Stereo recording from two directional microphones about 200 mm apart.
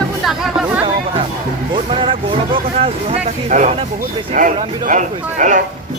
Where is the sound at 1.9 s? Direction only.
25° right (ahead or behind).